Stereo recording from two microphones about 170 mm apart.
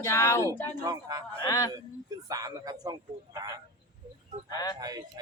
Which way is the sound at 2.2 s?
20° right (ahead or behind).